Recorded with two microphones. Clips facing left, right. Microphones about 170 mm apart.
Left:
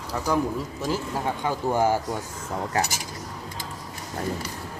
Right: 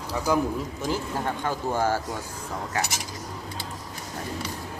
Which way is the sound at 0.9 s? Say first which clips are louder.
Left 1 dB; 5° left (ahead or behind).